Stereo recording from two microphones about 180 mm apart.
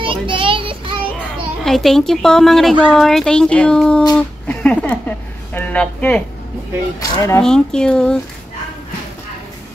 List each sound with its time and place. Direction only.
0.0 s child singing: 30° right (ahead or behind)
1.6 s a woman's voice: centre (ahead or behind)
7.4 s speech: 5° left (ahead or behind)